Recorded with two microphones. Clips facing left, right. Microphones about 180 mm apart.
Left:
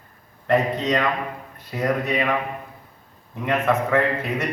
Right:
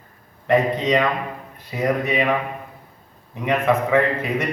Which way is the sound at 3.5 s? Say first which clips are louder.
Right 2 dB; 10° right (ahead or behind).